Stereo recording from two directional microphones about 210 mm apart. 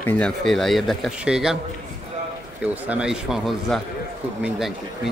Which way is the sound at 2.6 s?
5° right (ahead or behind).